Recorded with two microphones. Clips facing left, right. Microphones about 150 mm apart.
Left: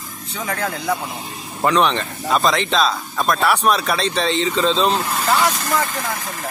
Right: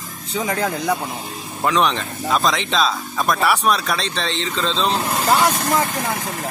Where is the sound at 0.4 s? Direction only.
20° right (ahead or behind).